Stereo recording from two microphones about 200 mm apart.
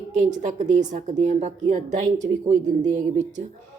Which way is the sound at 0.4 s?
40° right (ahead or behind).